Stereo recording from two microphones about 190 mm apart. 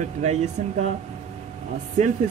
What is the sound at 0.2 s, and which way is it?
Speech, 35° right (ahead or behind).